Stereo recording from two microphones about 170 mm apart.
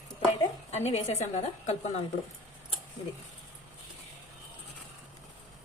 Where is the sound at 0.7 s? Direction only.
40° left (ahead or behind).